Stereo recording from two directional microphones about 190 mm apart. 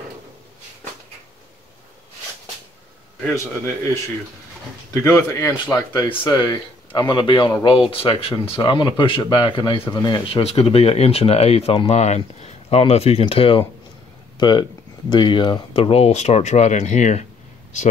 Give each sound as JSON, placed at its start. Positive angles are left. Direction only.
{"t": 5.0, "sound": "speech", "side_deg": 15}